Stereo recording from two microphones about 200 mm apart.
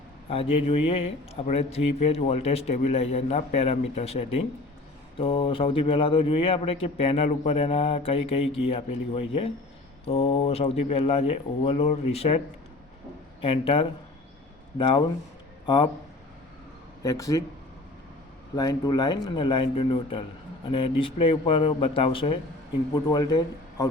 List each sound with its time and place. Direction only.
0.3 s speech: 30° left (ahead or behind)
13.4 s a man's voice: 25° left (ahead or behind)
17.0 s speech: 15° left (ahead or behind)
18.5 s speech: 20° left (ahead or behind)